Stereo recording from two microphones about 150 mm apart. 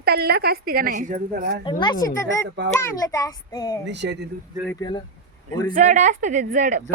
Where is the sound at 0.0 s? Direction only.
90° right; by 1.5 s 60° right (ahead or behind).